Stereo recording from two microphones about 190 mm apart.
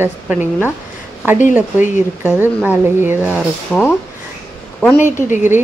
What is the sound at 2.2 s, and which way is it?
A woman's voice, 10° right (ahead or behind).